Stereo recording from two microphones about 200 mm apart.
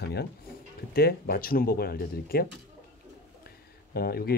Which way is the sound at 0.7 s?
50° left (ahead or behind).